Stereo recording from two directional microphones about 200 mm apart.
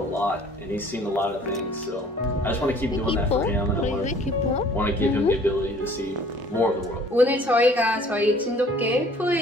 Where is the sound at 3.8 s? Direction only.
35° left (ahead or behind).